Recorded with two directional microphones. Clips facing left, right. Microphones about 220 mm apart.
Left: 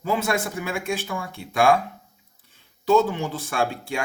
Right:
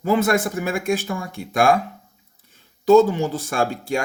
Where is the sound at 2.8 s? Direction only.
45° right (ahead or behind).